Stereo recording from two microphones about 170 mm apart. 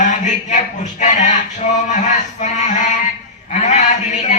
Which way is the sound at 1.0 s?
45° left (ahead or behind).